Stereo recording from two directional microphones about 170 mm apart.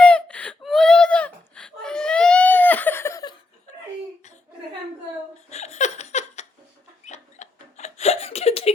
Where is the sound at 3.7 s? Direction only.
45° left (ahead or behind).